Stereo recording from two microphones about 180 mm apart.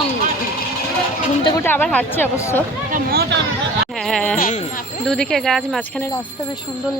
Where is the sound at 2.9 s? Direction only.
60° right (ahead or behind).